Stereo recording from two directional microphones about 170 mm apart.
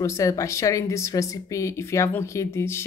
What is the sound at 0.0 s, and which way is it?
Speech, 20° left (ahead or behind).